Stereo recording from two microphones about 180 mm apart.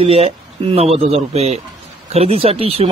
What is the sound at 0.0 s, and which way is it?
Speech, 35° right (ahead or behind).